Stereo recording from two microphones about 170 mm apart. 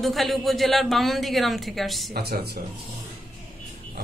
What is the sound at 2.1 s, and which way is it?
Speech, 70° right (ahead or behind).